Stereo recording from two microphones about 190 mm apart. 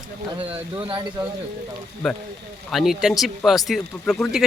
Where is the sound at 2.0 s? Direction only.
Centre (ahead or behind).